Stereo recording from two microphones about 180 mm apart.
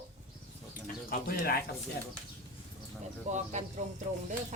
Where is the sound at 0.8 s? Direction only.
55° left (ahead or behind).